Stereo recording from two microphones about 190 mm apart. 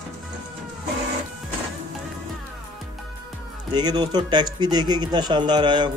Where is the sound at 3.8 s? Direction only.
20° right (ahead or behind).